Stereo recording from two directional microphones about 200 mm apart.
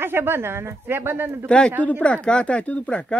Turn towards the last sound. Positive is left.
turn(degrees=5)  # may be behind; listen again after turning